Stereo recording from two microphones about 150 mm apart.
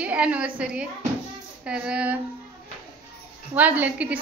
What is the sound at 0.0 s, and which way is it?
A woman's voice, 10° right (ahead or behind).